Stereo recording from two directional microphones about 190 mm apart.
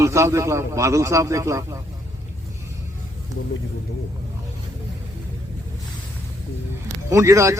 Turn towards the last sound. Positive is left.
turn(degrees=-15)  # may be behind; listen again after turning